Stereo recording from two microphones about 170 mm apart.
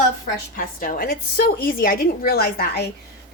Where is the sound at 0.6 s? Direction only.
55° left (ahead or behind).